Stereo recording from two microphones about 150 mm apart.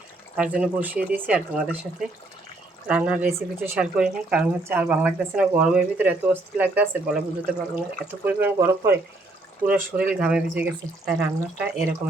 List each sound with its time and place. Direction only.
0.3 s speech: 5° right (ahead or behind)
9.6 s speech: 5° right (ahead or behind)